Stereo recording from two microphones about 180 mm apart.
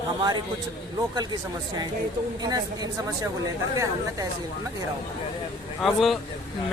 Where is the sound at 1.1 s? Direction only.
25° right (ahead or behind).